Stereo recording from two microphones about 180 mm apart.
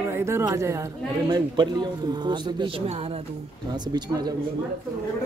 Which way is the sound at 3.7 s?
25° right (ahead or behind).